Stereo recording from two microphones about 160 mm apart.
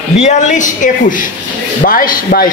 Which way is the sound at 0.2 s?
45° left (ahead or behind).